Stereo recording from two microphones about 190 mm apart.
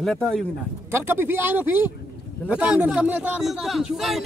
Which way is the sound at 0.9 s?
10° right (ahead or behind).